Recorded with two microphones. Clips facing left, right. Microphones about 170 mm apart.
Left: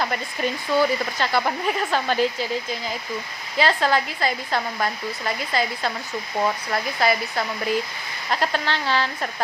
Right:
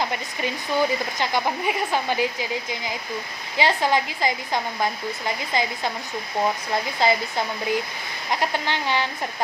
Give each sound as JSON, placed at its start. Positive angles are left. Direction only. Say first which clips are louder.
{"t": 0.0, "sound": "speech", "louder": "left 2 dB", "side_deg": -15}